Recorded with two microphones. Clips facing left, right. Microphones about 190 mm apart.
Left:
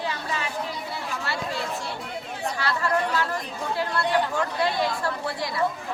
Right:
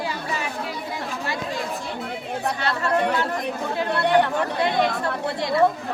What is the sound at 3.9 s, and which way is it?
Speech, 65° right (ahead or behind).